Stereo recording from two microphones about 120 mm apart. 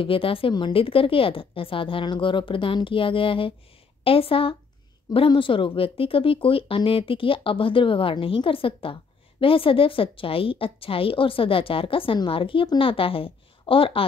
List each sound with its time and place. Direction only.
0.0 s a woman's voice: 50° left (ahead or behind)